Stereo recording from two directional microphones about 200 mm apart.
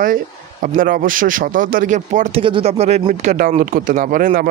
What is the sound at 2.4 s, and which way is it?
Speech, 30° right (ahead or behind).